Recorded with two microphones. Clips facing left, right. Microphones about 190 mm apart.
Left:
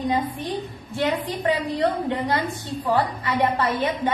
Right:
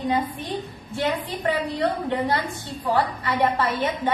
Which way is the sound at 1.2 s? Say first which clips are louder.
Left 1 dB; 15° left (ahead or behind).